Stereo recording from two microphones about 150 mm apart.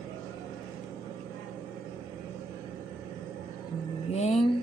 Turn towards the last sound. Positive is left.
turn(degrees=45)  # may be behind; listen again after turning